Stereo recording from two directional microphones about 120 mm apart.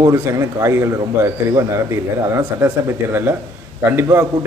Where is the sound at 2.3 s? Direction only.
15° right (ahead or behind).